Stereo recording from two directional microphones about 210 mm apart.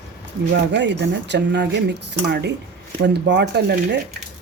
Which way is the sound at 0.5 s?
55° right (ahead or behind).